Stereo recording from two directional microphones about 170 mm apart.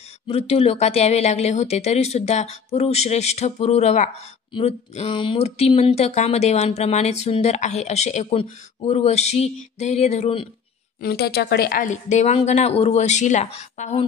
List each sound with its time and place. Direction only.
0.3 s speech: 35° left (ahead or behind)
11.0 s a woman's voice: 70° left (ahead or behind); by 14.0 s 40° left (ahead or behind)